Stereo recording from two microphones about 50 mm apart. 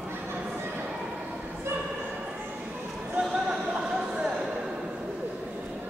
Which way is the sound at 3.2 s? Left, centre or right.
Centre.